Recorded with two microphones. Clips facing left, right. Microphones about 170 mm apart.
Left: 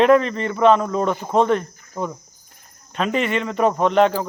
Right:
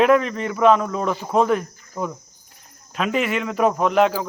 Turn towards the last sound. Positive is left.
turn(degrees=-5)  # may be behind; listen again after turning